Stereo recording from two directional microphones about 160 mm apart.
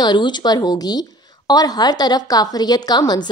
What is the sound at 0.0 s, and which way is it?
A woman's voice, 30° left (ahead or behind).